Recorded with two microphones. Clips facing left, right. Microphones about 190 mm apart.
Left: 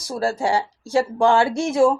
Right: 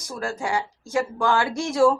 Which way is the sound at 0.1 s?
35° left (ahead or behind).